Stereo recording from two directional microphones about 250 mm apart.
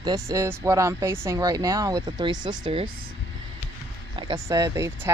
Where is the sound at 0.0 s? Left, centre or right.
Centre.